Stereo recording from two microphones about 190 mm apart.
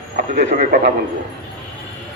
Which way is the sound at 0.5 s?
45° right (ahead or behind).